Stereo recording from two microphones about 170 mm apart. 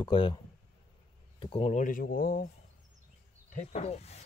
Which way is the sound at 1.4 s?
35° left (ahead or behind).